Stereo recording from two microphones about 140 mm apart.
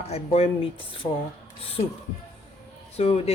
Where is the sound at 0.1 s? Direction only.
45° left (ahead or behind).